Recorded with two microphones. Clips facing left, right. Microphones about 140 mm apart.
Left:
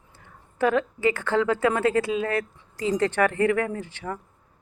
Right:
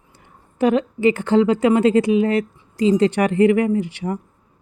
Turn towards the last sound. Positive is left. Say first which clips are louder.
# right 10 dB
turn(degrees=-15)  # may be behind; listen again after turning